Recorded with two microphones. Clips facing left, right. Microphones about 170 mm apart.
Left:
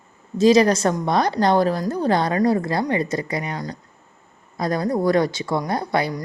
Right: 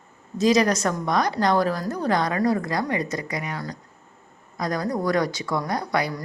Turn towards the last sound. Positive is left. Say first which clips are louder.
# left 3 dB
turn(degrees=25)  # may be behind; listen again after turning